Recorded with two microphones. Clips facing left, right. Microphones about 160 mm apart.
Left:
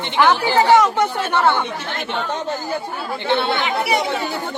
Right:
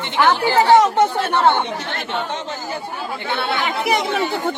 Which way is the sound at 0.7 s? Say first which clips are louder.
Right 2 dB; 20° right (ahead or behind).